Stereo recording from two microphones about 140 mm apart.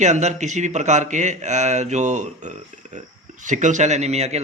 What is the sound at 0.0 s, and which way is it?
A man's voice, 55° right (ahead or behind).